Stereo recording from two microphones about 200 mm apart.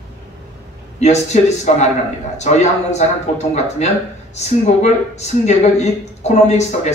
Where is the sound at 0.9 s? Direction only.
35° left (ahead or behind).